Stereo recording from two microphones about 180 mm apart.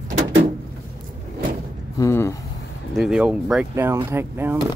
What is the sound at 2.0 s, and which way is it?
Speech, 15° left (ahead or behind).